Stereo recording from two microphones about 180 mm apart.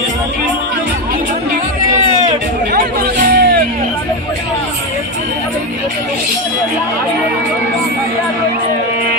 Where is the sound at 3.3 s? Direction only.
65° right (ahead or behind).